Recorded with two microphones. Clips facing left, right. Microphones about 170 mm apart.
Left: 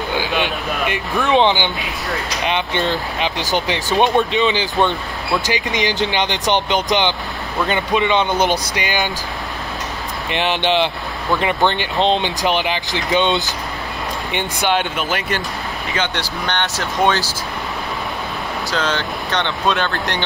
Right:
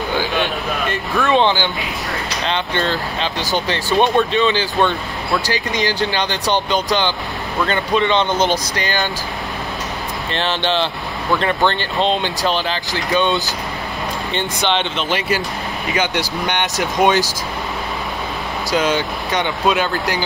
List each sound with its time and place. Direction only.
0.1 s speech: 15° left (ahead or behind)
10.3 s speech: 15° left (ahead or behind)
16.0 s speech: 15° right (ahead or behind)
18.7 s speech: 15° right (ahead or behind)